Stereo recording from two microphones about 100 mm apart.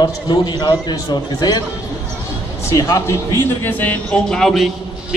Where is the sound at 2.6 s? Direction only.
35° left (ahead or behind); by 4.7 s 5° left (ahead or behind).